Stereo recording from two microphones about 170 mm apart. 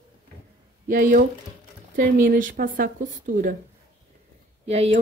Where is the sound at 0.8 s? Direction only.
50° right (ahead or behind).